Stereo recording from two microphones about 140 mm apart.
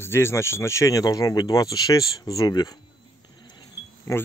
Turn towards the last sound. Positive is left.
turn(degrees=20)  # may be behind; listen again after turning